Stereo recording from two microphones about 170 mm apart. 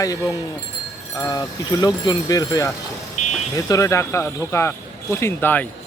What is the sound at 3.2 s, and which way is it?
Vehicle, 45° left (ahead or behind).